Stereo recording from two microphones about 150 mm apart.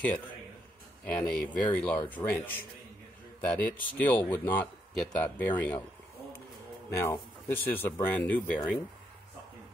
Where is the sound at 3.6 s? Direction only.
10° left (ahead or behind).